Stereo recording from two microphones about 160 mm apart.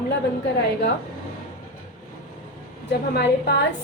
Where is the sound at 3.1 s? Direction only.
90° left.